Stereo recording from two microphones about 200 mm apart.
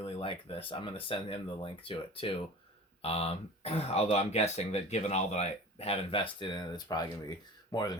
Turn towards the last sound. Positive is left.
turn(degrees=20)  # may be behind; listen again after turning